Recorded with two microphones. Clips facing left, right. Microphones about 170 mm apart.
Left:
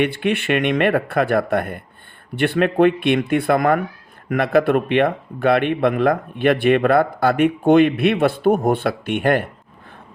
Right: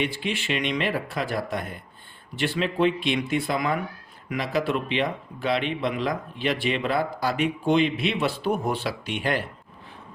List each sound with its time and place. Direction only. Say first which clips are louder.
0.0 s speech: left 8 dB; 60° left (ahead or behind)